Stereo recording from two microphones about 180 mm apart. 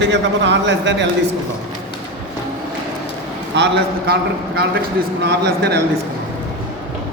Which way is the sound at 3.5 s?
75° right (ahead or behind).